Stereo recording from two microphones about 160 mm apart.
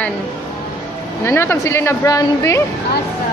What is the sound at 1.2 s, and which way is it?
Speech, 15° left (ahead or behind).